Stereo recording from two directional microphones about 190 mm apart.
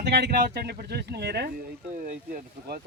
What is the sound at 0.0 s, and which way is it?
Speech, 60° right (ahead or behind).